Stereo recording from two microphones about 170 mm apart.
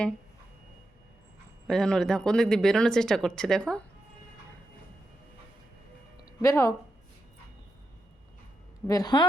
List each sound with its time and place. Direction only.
1.6 s speech: 5° left (ahead or behind)
6.2 s speech: 20° left (ahead or behind)
8.9 s speech: 25° left (ahead or behind)